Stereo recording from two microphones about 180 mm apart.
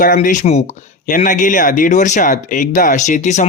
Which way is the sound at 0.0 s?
45° left (ahead or behind).